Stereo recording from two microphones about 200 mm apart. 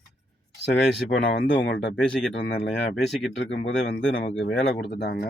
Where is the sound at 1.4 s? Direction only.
60° left (ahead or behind).